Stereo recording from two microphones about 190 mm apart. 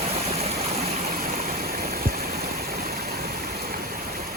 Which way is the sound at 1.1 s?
45° right (ahead or behind).